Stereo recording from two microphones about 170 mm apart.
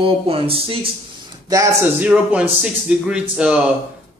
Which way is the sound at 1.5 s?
20° right (ahead or behind).